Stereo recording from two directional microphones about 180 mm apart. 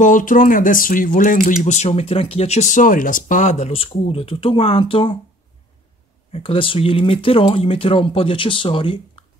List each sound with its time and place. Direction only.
0.0 s speech: 45° left (ahead or behind); by 5.1 s 30° left (ahead or behind)
6.3 s speech: 30° left (ahead or behind)